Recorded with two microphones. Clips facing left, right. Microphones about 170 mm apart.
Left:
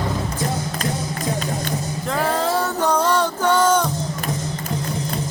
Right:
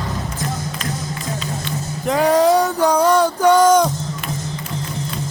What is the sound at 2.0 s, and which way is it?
Music, 20° right (ahead or behind).